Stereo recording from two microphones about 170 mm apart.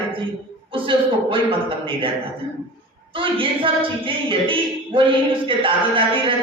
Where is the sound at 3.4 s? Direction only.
30° right (ahead or behind).